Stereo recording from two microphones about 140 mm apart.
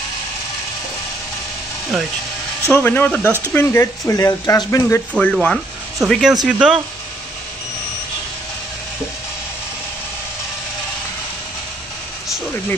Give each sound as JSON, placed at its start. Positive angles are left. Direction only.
{"t": 2.6, "sound": "speech", "side_deg": 15}
{"t": 5.1, "sound": "speech", "side_deg": 5}